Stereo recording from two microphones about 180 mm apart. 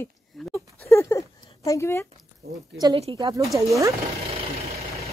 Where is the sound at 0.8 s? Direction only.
15° left (ahead or behind).